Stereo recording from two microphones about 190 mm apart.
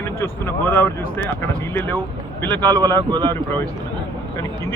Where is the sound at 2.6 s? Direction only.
20° right (ahead or behind).